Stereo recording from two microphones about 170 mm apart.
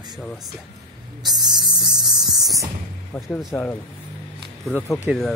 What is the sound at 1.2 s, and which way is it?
Music, 25° right (ahead or behind).